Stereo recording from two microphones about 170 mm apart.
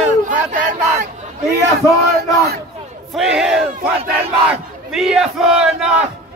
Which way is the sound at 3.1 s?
Centre (ahead or behind).